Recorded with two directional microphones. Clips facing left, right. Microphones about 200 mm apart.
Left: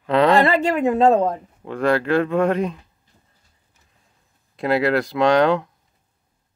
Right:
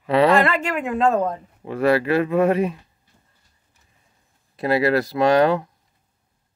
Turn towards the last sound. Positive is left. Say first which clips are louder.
# even
turn(degrees=-5)  # may be behind; listen again after turning